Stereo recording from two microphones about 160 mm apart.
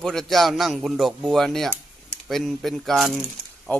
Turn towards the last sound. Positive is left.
turn(degrees=10)  # may be behind; listen again after turning